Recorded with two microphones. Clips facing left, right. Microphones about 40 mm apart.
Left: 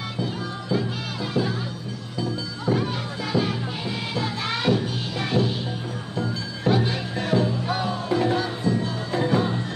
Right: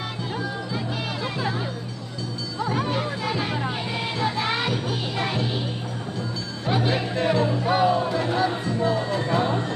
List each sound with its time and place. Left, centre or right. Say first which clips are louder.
0.2 s music: left 1 dB; centre
2.6 s music: right 1 dB; centre
6.7 s music: even; centre